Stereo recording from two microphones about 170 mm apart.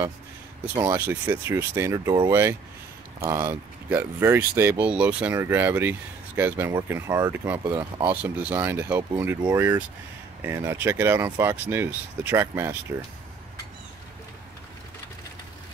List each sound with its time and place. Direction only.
0.9 s speech: 10° right (ahead or behind)